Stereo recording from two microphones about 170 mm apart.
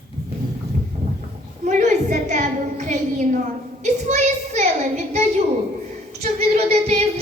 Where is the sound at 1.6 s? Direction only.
45° right (ahead or behind).